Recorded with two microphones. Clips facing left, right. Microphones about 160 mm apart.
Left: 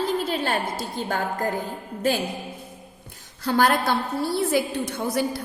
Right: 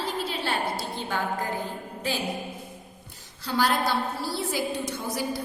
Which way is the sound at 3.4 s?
55° left (ahead or behind).